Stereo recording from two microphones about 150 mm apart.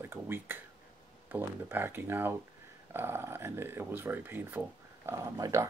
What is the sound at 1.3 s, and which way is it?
Speech, 15° right (ahead or behind).